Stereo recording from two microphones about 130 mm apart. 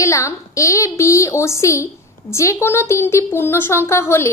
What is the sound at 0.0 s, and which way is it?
A woman's voice, 25° left (ahead or behind).